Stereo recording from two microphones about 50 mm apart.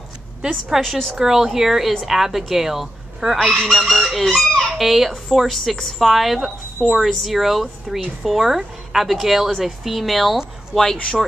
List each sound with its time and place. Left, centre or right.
0.4 s speech: centre
0.7 s a woman's voice: centre
1.1 s a woman's voice: centre
3.3 s fowl: centre
3.7 s a woman's voice: centre